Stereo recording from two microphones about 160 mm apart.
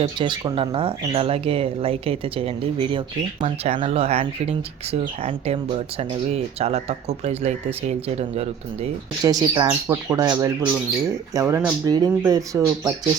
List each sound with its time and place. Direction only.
0.0 s speech: 30° right (ahead or behind)
9.2 s speech: 25° right (ahead or behind)